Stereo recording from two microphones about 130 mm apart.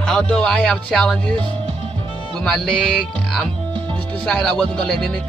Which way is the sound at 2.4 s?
5° left (ahead or behind).